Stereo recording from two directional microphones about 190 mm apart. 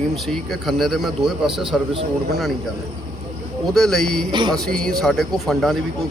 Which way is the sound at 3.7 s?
Centre (ahead or behind).